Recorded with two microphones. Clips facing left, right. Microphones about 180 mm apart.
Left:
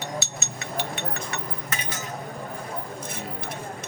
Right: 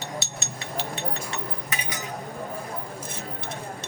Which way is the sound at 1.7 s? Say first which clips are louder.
Left 1 dB; 15° right (ahead or behind).